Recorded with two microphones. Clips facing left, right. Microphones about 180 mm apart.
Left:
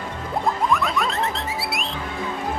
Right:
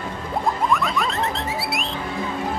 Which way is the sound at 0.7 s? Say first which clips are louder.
Even; centre (ahead or behind).